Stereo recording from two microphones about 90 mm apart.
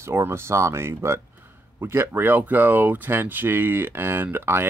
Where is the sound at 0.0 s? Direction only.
30° right (ahead or behind).